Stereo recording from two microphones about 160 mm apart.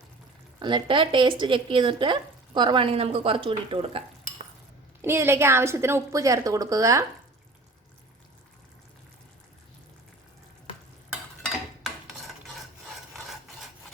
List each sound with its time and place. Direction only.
0.6 s speech: 30° right (ahead or behind)
5.0 s a woman's voice: 15° right (ahead or behind)